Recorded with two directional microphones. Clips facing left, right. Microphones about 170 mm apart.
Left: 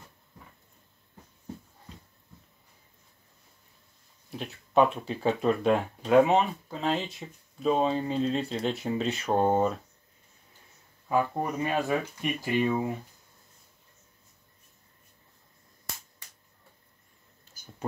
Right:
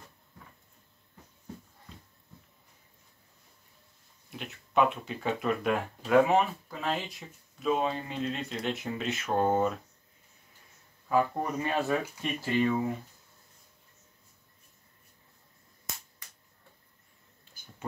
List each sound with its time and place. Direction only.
4.4 s speech: 35° left (ahead or behind)
11.1 s speech: 10° left (ahead or behind)
17.6 s a sound: 40° left (ahead or behind)